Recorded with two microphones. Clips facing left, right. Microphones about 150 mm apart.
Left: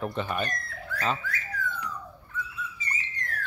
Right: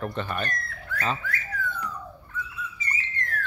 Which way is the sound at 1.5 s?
60° right (ahead or behind).